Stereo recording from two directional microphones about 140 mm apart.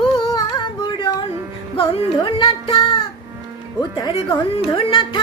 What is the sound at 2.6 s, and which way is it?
Child singing, 40° left (ahead or behind).